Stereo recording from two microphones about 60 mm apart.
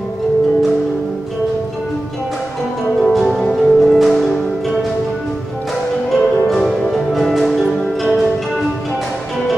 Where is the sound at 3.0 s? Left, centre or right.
Centre.